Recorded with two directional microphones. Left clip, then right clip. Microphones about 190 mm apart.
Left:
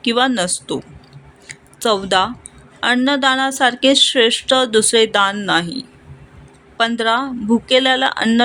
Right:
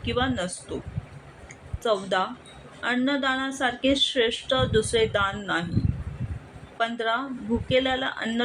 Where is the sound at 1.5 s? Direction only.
55° left (ahead or behind).